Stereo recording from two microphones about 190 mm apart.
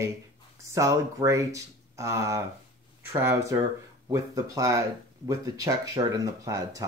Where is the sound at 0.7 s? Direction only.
15° right (ahead or behind).